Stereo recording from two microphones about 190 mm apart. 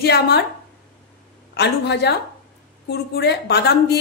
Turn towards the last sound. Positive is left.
turn(degrees=60)  # may be behind; listen again after turning